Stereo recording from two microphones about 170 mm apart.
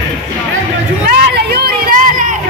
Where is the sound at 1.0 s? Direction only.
70° right (ahead or behind); by 2.3 s 50° right (ahead or behind).